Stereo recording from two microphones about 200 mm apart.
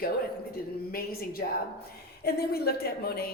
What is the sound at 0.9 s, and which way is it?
A woman's voice, 50° left (ahead or behind).